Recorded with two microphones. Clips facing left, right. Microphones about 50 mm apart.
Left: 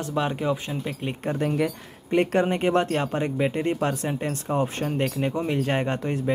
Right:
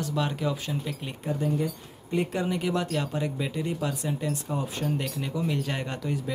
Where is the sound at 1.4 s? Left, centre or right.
Left.